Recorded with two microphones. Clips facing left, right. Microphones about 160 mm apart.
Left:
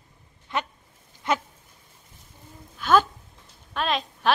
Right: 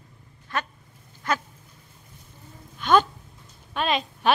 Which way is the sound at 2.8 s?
5° left (ahead or behind).